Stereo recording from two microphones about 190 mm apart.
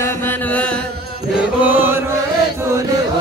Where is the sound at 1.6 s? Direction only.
10° right (ahead or behind).